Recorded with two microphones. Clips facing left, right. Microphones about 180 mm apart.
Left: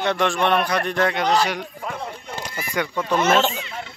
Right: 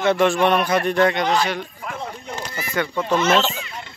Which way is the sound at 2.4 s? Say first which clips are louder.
Right 1 dB; 10° left (ahead or behind).